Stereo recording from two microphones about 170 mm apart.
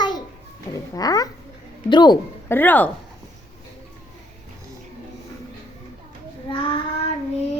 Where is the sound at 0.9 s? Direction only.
20° left (ahead or behind).